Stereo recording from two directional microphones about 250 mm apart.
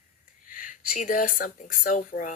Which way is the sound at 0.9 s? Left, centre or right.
Left.